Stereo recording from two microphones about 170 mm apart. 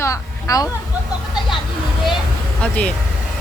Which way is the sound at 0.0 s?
20° left (ahead or behind).